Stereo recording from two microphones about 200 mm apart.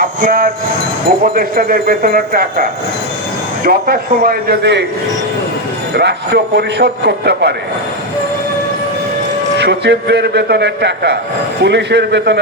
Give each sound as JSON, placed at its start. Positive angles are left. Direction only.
{"t": 0.2, "sound": "speech", "side_deg": -45}
{"t": 3.7, "sound": "speech", "side_deg": -45}
{"t": 6.0, "sound": "a man's voice", "side_deg": -55}
{"t": 9.6, "sound": "a man's voice", "side_deg": -60}